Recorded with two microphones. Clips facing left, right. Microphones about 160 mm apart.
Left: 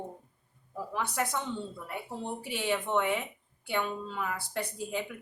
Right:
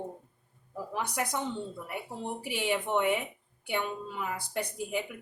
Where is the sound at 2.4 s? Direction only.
15° right (ahead or behind).